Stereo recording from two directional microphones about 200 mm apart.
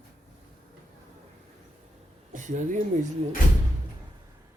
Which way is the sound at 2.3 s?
40° right (ahead or behind).